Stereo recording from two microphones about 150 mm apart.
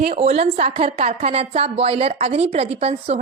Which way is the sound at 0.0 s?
45° right (ahead or behind).